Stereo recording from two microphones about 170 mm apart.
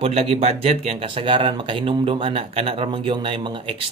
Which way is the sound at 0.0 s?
35° right (ahead or behind).